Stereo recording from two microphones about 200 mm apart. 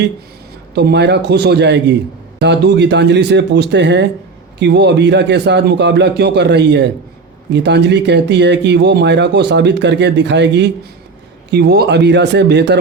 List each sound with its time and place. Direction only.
0.8 s speech: 55° right (ahead or behind)